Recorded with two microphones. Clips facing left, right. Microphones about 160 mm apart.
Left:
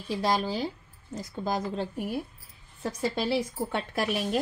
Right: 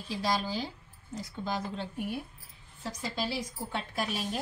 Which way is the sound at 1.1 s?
45° left (ahead or behind).